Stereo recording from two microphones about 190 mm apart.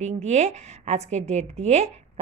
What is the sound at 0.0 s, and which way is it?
A woman's voice, 35° right (ahead or behind).